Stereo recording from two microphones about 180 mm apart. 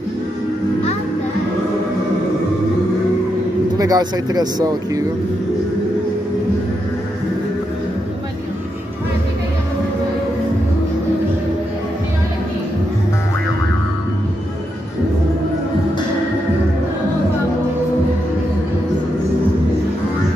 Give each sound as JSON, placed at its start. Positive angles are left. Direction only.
{"t": 3.7, "sound": "speech", "side_deg": -20}